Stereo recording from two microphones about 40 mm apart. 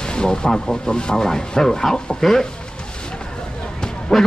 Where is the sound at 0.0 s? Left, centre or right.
Centre.